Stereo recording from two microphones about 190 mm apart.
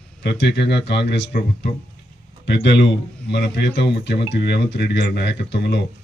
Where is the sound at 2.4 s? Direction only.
65° left (ahead or behind).